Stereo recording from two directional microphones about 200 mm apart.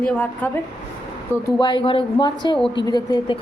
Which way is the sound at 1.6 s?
25° left (ahead or behind).